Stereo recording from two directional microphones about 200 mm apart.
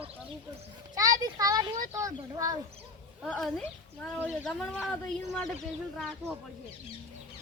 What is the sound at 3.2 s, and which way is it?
Speech, centre (ahead or behind).